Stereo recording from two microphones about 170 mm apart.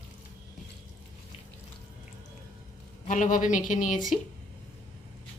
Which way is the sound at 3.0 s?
50° left (ahead or behind).